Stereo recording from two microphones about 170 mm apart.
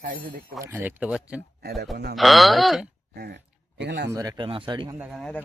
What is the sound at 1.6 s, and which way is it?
Speech, 75° right (ahead or behind).